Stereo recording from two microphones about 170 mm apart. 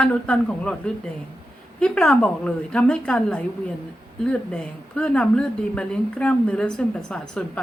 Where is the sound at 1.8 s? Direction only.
Centre (ahead or behind).